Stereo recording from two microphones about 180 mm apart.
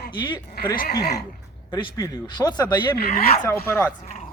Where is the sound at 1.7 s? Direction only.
20° left (ahead or behind).